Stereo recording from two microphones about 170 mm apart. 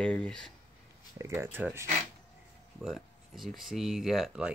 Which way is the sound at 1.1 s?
15° right (ahead or behind).